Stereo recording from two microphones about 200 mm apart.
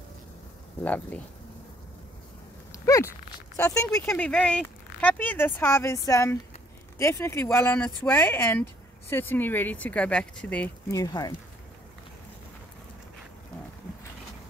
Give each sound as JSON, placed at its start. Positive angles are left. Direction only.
{"t": 0.8, "sound": "speech", "side_deg": 10}
{"t": 2.8, "sound": "a sound", "side_deg": 15}
{"t": 3.5, "sound": "speech", "side_deg": 15}
{"t": 11.0, "sound": "speech", "side_deg": 20}